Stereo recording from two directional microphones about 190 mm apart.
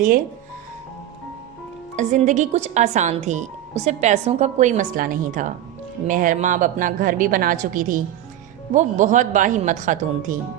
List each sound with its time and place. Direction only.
2.0 s a woman's voice: 40° right (ahead or behind)